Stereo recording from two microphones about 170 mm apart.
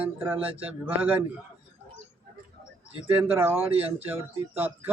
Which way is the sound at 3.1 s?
10° right (ahead or behind).